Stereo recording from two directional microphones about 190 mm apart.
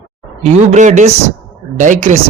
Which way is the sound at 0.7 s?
40° right (ahead or behind).